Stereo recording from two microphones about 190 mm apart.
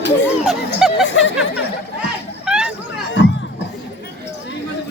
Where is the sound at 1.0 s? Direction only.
80° left.